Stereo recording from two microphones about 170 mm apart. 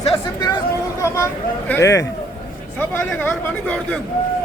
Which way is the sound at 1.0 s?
15° left (ahead or behind).